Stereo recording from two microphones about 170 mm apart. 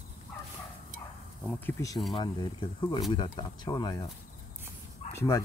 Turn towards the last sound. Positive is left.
turn(degrees=20)  # may be behind; listen again after turning